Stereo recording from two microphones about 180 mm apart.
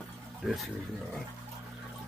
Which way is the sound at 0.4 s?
Centre (ahead or behind).